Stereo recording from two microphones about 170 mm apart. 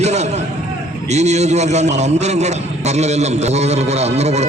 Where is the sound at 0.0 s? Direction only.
40° right (ahead or behind).